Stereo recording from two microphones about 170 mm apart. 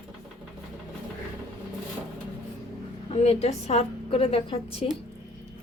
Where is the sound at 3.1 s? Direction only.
35° left (ahead or behind).